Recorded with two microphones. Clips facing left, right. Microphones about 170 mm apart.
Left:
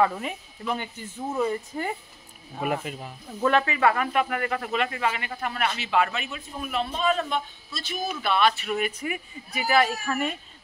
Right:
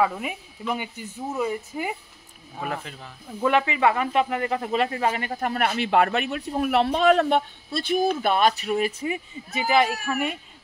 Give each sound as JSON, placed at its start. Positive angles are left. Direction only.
{"t": 0.0, "sound": "speech", "side_deg": -5}
{"t": 2.6, "sound": "speech", "side_deg": 10}
{"t": 3.3, "sound": "speech", "side_deg": -15}
{"t": 8.2, "sound": "speech", "side_deg": -45}